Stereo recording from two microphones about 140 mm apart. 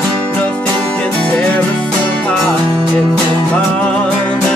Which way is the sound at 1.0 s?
10° left (ahead or behind).